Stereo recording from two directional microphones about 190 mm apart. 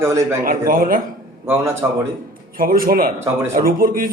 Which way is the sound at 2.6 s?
50° right (ahead or behind).